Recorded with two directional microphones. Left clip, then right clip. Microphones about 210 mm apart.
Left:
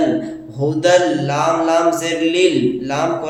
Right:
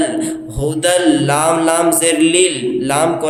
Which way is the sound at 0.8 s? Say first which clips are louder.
Even; 35° right (ahead or behind).